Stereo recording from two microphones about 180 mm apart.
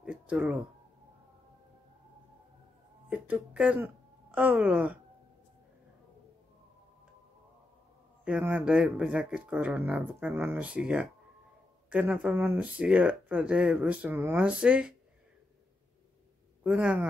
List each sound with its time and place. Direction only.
0.0 s a sound: 5° right (ahead or behind)
3.1 s speech: 10° right (ahead or behind)
8.3 s speech: 5° right (ahead or behind)
16.6 s speech: 5° right (ahead or behind)